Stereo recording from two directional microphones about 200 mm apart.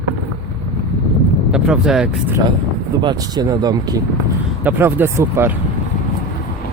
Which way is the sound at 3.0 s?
20° right (ahead or behind).